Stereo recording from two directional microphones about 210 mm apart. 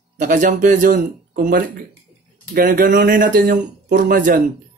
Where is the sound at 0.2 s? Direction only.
40° right (ahead or behind).